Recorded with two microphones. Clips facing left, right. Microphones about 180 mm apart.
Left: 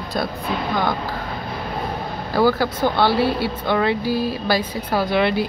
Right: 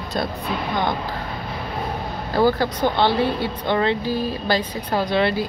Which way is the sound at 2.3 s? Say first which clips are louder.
Left 1 dB; 15° right (ahead or behind).